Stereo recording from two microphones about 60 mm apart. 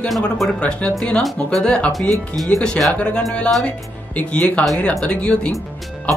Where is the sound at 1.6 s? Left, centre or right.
Centre.